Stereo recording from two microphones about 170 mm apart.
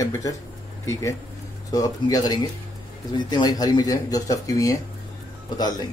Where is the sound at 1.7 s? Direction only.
20° left (ahead or behind).